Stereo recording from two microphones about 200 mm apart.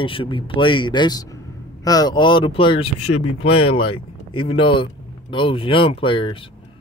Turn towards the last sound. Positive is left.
turn(degrees=25)  # may be behind; listen again after turning